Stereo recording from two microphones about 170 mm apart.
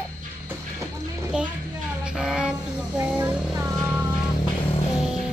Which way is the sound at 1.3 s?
5° right (ahead or behind).